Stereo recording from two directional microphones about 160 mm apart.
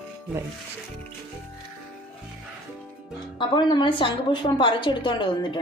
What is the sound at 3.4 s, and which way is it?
A woman's voice, 30° left (ahead or behind).